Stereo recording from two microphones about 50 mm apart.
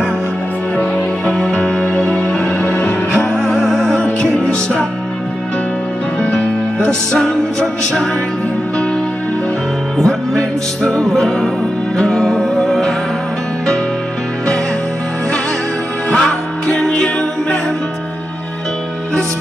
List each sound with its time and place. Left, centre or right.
0.7 s music: left
3.2 s music: centre
7.1 s music: centre
9.9 s music: centre
16.2 s music: centre